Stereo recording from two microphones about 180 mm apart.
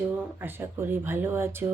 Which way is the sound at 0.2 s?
10° right (ahead or behind).